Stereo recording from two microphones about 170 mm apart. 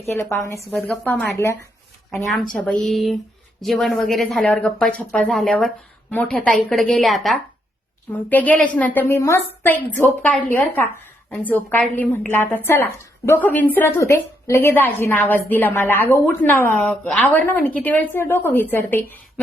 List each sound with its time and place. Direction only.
0.2 s a woman's voice: 15° left (ahead or behind)
0.7 s speech: 5° left (ahead or behind)
2.6 s a woman's voice: 5° left (ahead or behind)